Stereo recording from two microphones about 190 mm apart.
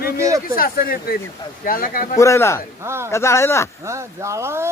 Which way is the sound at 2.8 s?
15° right (ahead or behind).